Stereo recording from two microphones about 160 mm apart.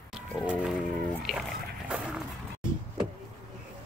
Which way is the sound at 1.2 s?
Centre (ahead or behind).